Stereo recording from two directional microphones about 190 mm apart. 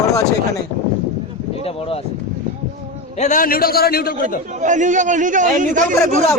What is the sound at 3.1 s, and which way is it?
A man's voice, 40° left (ahead or behind).